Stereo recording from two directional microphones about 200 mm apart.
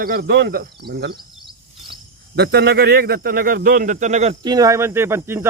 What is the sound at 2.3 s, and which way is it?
A man's voice, 55° right (ahead or behind).